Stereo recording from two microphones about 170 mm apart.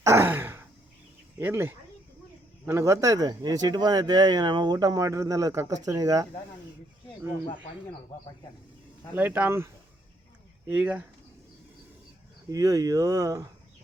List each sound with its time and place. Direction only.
0.0 s a sound: 15° right (ahead or behind)
1.4 s speech: 15° right (ahead or behind)
9.1 s speech: 10° right (ahead or behind)
10.7 s speech: 10° right (ahead or behind)
12.5 s speech: 20° right (ahead or behind)